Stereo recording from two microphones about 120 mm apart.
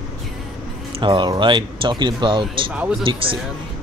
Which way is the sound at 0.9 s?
45° right (ahead or behind).